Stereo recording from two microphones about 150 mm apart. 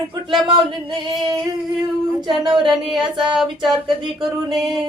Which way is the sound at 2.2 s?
30° right (ahead or behind).